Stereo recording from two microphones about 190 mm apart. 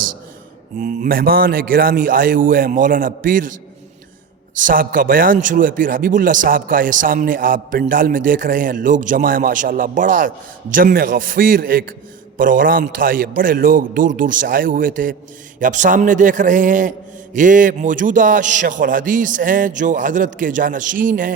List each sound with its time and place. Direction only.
0.8 s a man's voice: 45° right (ahead or behind)
4.5 s a man's voice: 45° right (ahead or behind)